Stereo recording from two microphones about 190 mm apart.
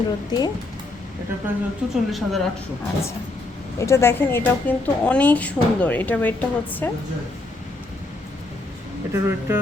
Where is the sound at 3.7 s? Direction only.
15° left (ahead or behind).